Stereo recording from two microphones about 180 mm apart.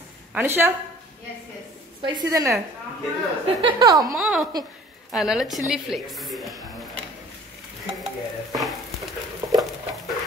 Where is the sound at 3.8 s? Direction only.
20° right (ahead or behind).